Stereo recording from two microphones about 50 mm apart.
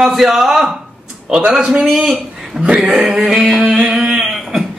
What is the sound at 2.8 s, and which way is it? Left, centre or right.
Speech, centre.